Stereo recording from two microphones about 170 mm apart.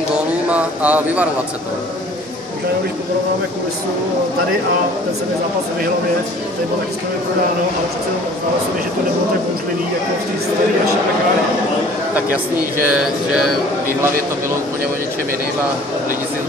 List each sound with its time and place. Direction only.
0.5 s speech: 10° right (ahead or behind)
12.9 s speech: 5° right (ahead or behind)